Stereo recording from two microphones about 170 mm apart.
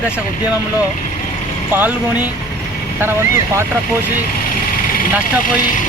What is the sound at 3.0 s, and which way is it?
Speech, 15° right (ahead or behind).